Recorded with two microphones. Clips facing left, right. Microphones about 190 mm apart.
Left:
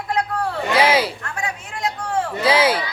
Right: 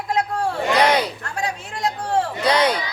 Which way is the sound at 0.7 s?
5° left (ahead or behind).